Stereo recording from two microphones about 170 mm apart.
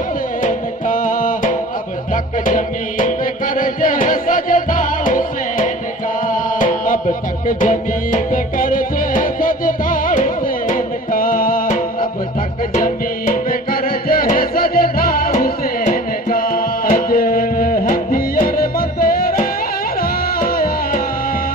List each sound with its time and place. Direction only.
0.4 s music: 50° left (ahead or behind)